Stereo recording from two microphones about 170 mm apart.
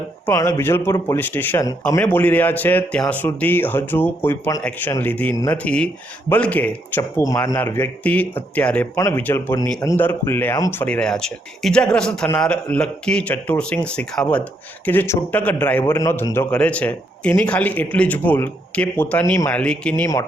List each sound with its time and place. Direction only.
0.3 s a man's voice: 20° left (ahead or behind)